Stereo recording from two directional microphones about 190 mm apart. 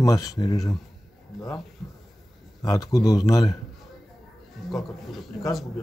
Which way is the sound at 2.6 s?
20° left (ahead or behind).